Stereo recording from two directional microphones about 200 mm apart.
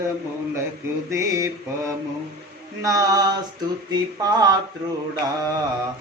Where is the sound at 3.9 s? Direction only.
20° right (ahead or behind).